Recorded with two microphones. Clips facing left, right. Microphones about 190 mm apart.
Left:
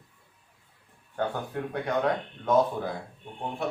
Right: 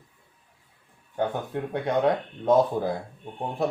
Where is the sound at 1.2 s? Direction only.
25° right (ahead or behind).